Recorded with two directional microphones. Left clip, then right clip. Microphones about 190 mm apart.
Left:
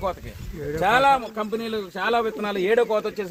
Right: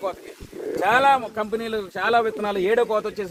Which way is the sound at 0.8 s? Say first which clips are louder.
Right 1 dB; 50° left (ahead or behind).